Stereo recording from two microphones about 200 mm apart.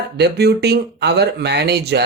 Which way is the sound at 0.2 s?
55° right (ahead or behind).